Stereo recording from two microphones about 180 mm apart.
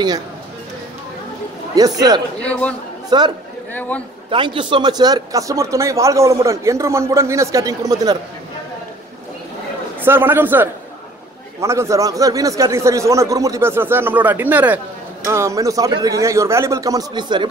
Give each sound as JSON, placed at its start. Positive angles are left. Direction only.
{"t": 1.8, "sound": "speech", "side_deg": -20}
{"t": 2.4, "sound": "speech", "side_deg": 5}
{"t": 3.1, "sound": "speech", "side_deg": -25}
{"t": 10.0, "sound": "speech", "side_deg": -10}